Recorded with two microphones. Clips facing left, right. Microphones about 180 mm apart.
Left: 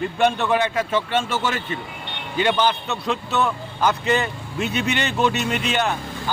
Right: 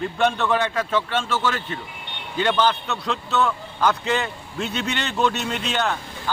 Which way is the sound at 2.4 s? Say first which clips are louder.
Left 1 dB; 10° left (ahead or behind).